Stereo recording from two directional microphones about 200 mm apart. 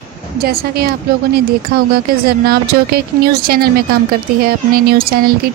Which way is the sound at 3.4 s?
50° right (ahead or behind).